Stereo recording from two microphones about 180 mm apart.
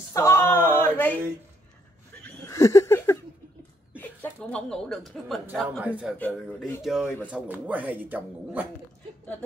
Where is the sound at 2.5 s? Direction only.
15° left (ahead or behind).